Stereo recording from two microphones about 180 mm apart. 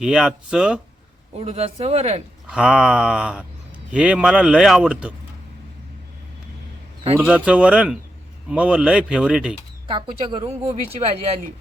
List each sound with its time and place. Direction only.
0.0 s speech: 5° right (ahead or behind)
1.3 s speech: 35° right (ahead or behind)
2.5 s speech: 5° right (ahead or behind)
7.3 s speech: 5° right (ahead or behind)
9.8 s speech: 30° right (ahead or behind)